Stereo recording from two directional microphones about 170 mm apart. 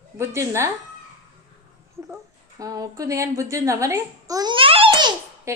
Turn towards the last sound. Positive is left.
turn(degrees=-25)  # may be behind; listen again after turning